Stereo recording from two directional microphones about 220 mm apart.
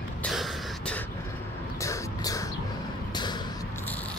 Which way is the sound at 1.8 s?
15° left (ahead or behind).